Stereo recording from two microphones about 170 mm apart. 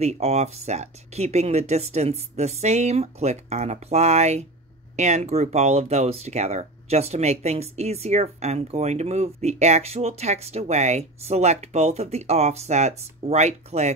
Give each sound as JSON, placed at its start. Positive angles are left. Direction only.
{"t": 0.0, "sound": "speech", "side_deg": -40}